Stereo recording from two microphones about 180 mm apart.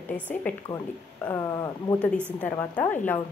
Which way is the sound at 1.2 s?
15° left (ahead or behind).